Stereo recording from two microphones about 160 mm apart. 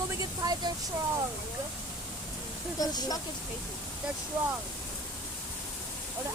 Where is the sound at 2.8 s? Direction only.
25° left (ahead or behind).